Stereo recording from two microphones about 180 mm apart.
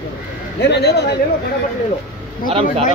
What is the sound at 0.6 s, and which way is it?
Speech, 70° left (ahead or behind).